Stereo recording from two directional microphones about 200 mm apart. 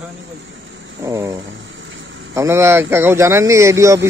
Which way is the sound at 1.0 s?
15° right (ahead or behind).